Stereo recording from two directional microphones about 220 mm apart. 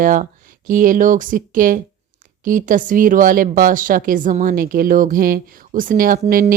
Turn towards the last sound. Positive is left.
turn(degrees=-40)  # may be behind; listen again after turning